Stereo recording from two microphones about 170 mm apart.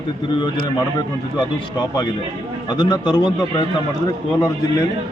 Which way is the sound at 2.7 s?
25° left (ahead or behind).